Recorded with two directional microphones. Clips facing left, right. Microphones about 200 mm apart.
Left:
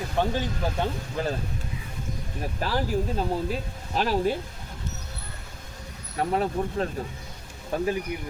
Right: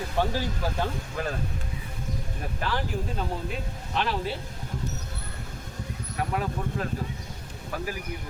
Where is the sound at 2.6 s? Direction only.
35° left (ahead or behind).